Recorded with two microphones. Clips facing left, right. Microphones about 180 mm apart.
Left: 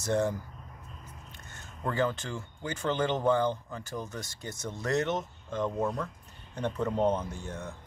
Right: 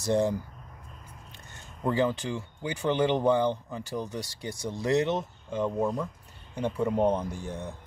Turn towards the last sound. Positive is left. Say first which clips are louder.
# right 3 dB
turn(degrees=-15)  # may be behind; listen again after turning